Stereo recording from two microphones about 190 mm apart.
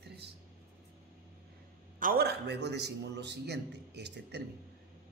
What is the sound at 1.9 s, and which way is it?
Speech, 50° right (ahead or behind).